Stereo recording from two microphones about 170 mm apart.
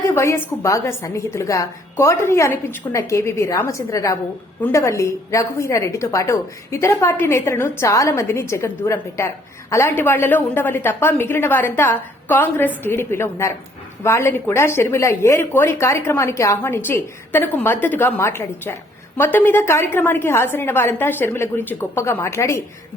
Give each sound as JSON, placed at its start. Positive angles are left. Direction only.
{"t": 0.1, "sound": "speech", "side_deg": 15}